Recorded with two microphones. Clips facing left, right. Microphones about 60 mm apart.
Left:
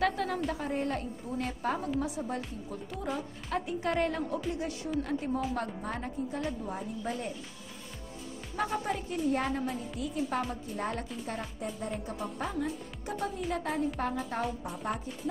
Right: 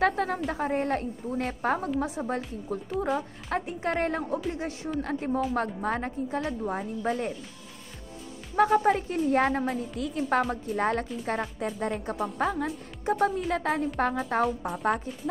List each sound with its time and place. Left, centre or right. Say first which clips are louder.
0.0 s a sound: right 4 dB; right
0.5 s a woman's voice: right 5 dB; right
8.5 s a woman's voice: right 11 dB; right